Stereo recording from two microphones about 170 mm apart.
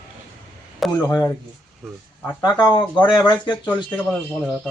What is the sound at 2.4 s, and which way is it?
Speech, 25° left (ahead or behind).